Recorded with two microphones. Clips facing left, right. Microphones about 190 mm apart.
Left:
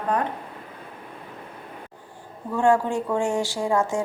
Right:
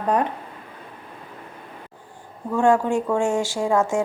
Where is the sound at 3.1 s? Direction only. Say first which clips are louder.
Right 2 dB; 15° left (ahead or behind).